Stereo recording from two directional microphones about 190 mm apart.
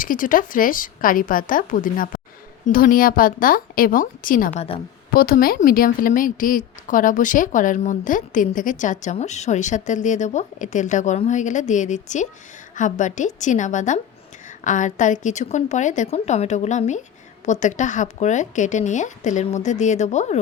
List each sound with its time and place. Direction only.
0.0 s a woman's voice: 45° left (ahead or behind)